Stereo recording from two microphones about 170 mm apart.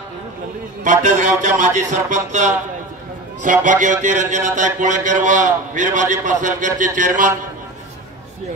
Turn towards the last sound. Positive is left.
turn(degrees=-50)  # may be behind; listen again after turning